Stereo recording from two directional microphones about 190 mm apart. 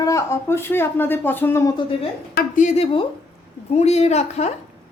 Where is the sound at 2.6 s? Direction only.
35° left (ahead or behind).